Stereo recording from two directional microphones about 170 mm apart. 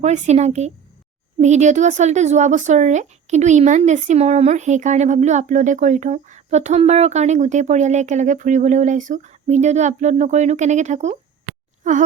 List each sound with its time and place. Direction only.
0.0 s speech: 45° right (ahead or behind)